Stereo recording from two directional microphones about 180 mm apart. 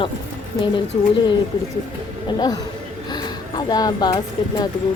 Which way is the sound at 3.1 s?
25° left (ahead or behind).